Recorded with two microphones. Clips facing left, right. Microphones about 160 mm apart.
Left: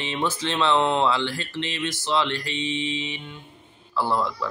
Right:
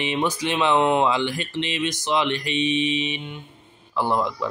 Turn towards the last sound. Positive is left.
turn(degrees=-15)  # may be behind; listen again after turning